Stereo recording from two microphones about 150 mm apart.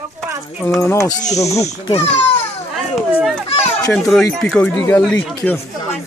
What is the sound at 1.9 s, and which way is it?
Speech, 45° left (ahead or behind).